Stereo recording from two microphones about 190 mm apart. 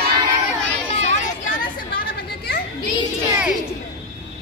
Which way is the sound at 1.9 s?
55° left (ahead or behind).